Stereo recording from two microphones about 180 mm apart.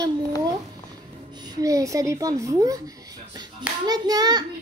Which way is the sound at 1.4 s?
20° right (ahead or behind).